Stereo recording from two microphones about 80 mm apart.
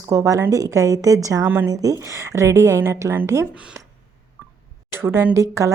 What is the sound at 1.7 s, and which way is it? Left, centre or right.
Speech, right.